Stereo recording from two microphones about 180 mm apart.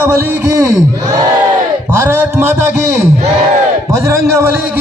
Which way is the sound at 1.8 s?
10° right (ahead or behind).